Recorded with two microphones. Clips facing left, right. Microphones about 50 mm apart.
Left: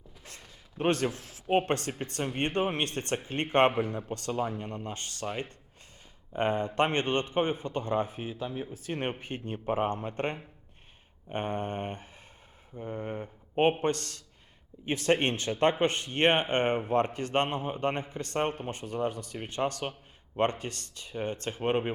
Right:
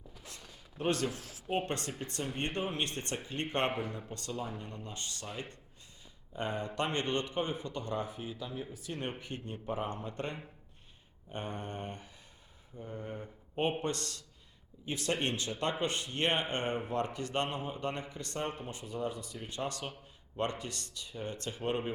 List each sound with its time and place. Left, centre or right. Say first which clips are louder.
0.2 s a sound: left 2 dB; left
0.8 s speech: left 5 dB; left
3.7 s a man's voice: left 6 dB; centre
4.3 s speech: left 8 dB; left
6.3 s speech: left 8 dB; left